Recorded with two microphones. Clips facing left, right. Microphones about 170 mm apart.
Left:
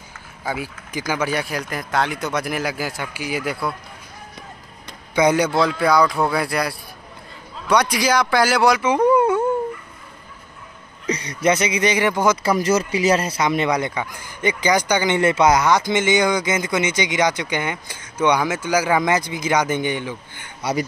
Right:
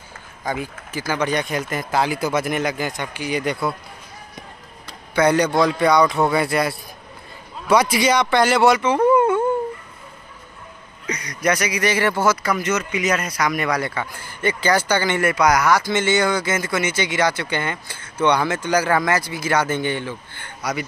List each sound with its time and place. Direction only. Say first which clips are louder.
0.5 s a man's voice: right 1 dB; 10° left (ahead or behind)
4.8 s a man's voice: even; 15° left (ahead or behind)
8.8 s a sound: even; 15° left (ahead or behind)
11.1 s speech: left 3 dB; 30° left (ahead or behind)
12.4 s speech: left 4 dB; 35° left (ahead or behind); by 20.5 s 15° left (ahead or behind)